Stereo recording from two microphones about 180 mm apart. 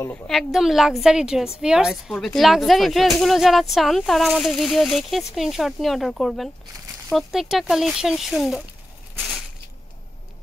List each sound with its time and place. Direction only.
0.3 s speech: centre (ahead or behind)